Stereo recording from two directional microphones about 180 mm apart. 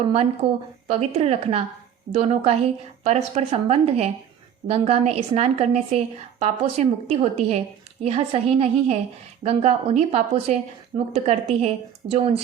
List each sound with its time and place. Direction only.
0.4 s a woman's voice: 35° right (ahead or behind)